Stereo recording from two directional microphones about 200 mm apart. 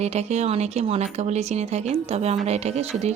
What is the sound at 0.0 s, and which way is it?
A woman's voice, 35° right (ahead or behind).